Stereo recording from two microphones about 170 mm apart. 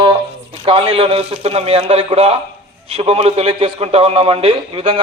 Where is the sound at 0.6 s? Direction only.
35° right (ahead or behind).